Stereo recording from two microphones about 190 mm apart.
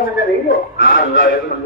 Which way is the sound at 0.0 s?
50° left (ahead or behind).